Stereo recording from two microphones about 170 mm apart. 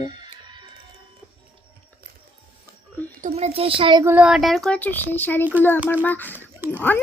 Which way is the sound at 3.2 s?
40° right (ahead or behind).